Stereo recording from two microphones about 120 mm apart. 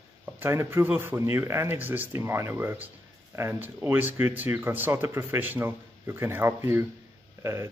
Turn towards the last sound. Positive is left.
turn(degrees=-25)  # may be behind; listen again after turning